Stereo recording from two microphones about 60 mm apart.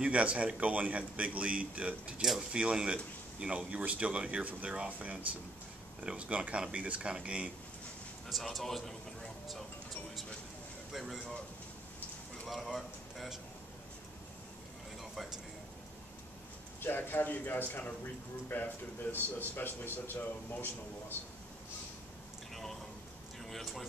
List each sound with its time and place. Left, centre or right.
0.0 s speech: centre
8.3 s a man's voice: centre
10.9 s a man's voice: centre
12.4 s speech: centre
15.0 s a sound: centre
16.8 s speech: left
22.5 s a sound: centre